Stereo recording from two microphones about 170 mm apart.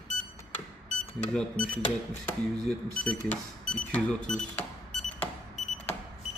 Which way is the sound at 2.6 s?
5° left (ahead or behind).